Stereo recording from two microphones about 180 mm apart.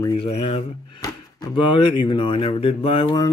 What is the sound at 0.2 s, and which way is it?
Speech, 35° left (ahead or behind).